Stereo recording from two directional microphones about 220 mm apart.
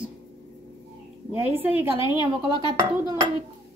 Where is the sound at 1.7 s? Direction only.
20° left (ahead or behind).